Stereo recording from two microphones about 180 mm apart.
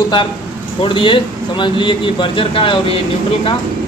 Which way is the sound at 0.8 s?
30° left (ahead or behind).